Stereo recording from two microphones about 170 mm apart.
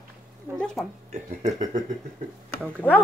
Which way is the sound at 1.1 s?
40° right (ahead or behind).